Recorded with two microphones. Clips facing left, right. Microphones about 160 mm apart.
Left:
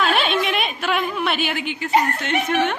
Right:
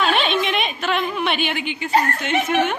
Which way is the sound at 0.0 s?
5° left (ahead or behind).